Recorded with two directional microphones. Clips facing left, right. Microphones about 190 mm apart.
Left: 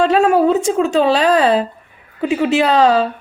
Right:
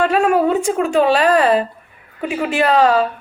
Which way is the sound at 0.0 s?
25° left (ahead or behind).